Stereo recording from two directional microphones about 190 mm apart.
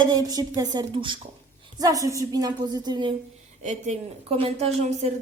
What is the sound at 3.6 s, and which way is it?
A woman's voice, 35° right (ahead or behind).